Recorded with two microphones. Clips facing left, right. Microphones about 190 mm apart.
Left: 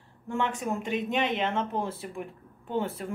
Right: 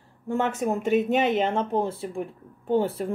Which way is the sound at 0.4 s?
45° right (ahead or behind).